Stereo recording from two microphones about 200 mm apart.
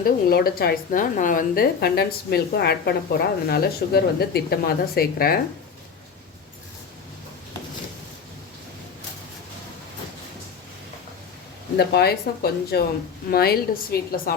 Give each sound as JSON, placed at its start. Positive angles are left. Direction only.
{"t": 0.0, "sound": "a woman's voice", "side_deg": 50}
{"t": 11.8, "sound": "a woman's voice", "side_deg": 55}